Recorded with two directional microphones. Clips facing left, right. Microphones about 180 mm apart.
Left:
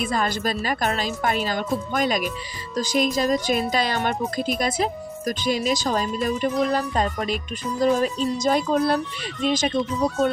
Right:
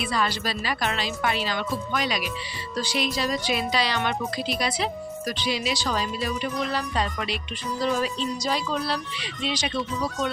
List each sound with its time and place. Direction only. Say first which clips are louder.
0.0 s speech: left 3 dB; 45° left (ahead or behind)